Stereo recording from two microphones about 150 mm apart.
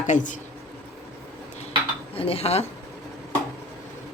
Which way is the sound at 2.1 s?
40° left (ahead or behind).